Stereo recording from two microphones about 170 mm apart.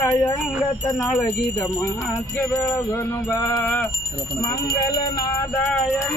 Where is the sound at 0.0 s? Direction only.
15° left (ahead or behind).